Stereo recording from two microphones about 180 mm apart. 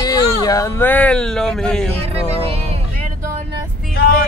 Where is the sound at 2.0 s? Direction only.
35° right (ahead or behind).